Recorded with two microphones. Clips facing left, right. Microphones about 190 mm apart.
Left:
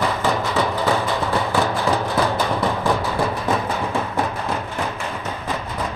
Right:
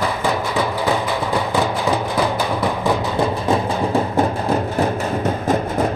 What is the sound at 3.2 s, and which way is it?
Music, 25° right (ahead or behind).